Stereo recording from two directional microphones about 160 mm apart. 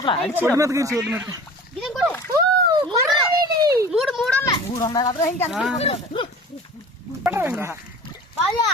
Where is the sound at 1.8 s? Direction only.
Centre (ahead or behind).